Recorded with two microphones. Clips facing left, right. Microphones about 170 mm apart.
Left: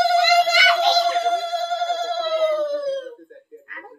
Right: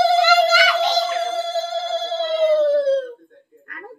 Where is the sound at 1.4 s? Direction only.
30° right (ahead or behind).